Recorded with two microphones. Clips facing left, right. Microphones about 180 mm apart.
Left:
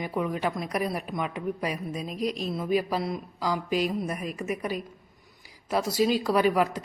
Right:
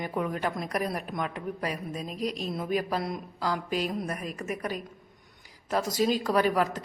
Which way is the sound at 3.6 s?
40° right (ahead or behind).